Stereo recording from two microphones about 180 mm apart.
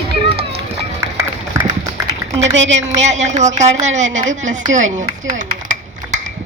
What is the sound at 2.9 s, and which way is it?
A woman's voice, 40° right (ahead or behind).